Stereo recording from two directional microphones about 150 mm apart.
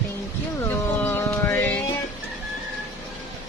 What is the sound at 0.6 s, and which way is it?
Music, 15° left (ahead or behind).